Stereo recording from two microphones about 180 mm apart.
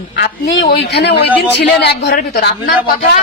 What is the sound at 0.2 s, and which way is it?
A woman's voice, 75° left (ahead or behind).